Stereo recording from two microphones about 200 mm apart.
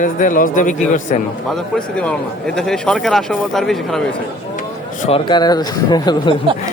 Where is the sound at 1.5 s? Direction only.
5° left (ahead or behind).